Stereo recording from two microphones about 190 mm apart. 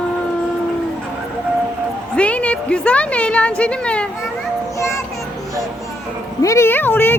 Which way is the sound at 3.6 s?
5° left (ahead or behind).